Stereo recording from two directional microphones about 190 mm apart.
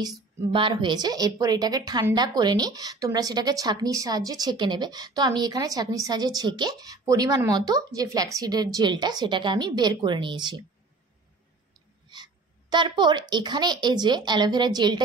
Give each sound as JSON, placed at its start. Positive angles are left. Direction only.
{"t": 0.5, "sound": "a woman's voice", "side_deg": -25}
{"t": 12.1, "sound": "a woman's voice", "side_deg": -25}